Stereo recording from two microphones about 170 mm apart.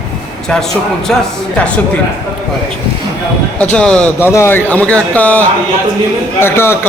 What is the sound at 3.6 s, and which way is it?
A man's voice, 5° left (ahead or behind).